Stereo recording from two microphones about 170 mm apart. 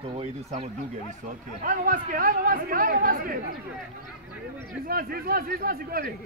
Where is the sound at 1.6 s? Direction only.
55° right (ahead or behind).